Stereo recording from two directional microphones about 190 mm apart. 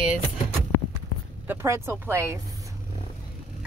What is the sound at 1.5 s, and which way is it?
Speech, 15° right (ahead or behind).